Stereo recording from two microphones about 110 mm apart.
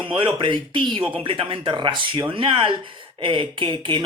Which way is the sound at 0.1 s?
50° right (ahead or behind).